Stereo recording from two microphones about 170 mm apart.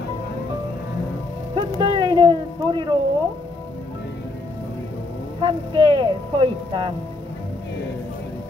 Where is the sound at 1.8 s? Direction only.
30° right (ahead or behind).